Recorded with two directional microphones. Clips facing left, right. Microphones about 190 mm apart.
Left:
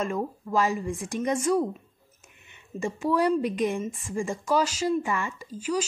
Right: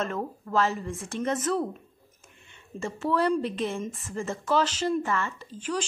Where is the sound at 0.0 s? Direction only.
10° left (ahead or behind).